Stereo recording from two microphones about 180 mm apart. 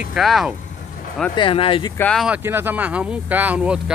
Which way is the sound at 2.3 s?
10° right (ahead or behind).